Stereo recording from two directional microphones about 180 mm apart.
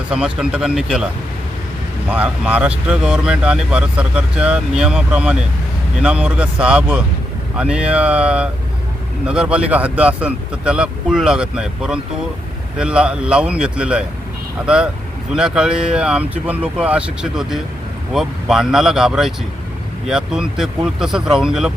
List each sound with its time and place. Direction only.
0.3 s speech: 5° right (ahead or behind)
2.0 s speech: 5° right (ahead or behind)
15.3 s speech: 5° right (ahead or behind)